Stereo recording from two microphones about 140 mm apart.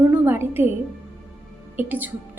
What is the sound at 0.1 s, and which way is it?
Music, 15° right (ahead or behind).